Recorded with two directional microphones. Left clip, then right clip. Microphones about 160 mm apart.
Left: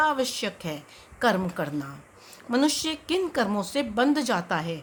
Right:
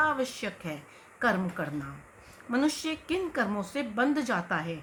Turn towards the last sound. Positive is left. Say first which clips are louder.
# left 4 dB
turn(degrees=55)  # may be behind; listen again after turning